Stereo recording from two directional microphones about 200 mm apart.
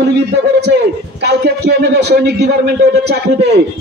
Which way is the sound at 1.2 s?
55° right (ahead or behind).